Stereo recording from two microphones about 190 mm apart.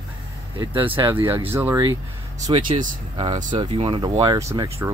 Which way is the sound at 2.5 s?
25° right (ahead or behind).